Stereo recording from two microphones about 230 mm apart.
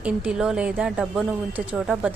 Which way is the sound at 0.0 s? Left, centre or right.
Centre.